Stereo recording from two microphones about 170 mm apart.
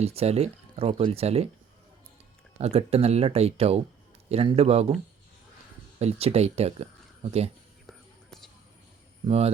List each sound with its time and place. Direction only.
0.0 s speech: 35° right (ahead or behind)
2.6 s speech: 35° right (ahead or behind)
6.0 s speech: 40° right (ahead or behind)
7.9 s whispering: 5° left (ahead or behind)
9.2 s speech: 35° right (ahead or behind)